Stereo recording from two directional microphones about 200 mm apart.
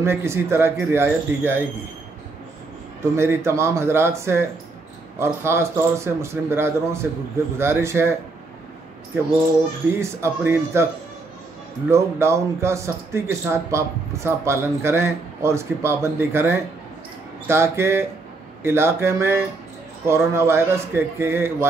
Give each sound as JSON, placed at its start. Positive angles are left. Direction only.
{"t": 0.0, "sound": "speech", "side_deg": -15}
{"t": 3.0, "sound": "speech", "side_deg": -15}
{"t": 9.9, "sound": "speech", "side_deg": -15}
{"t": 11.9, "sound": "speech", "side_deg": -15}